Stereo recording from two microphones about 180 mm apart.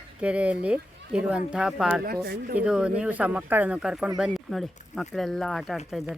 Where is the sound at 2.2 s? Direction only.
60° right (ahead or behind).